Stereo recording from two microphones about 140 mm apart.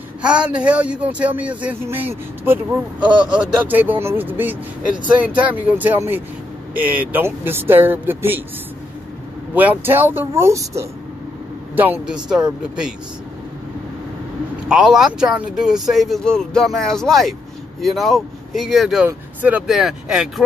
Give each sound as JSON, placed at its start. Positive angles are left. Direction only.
{"t": 0.2, "sound": "speech", "side_deg": -5}
{"t": 9.5, "sound": "speech", "side_deg": -10}
{"t": 14.7, "sound": "speech", "side_deg": -5}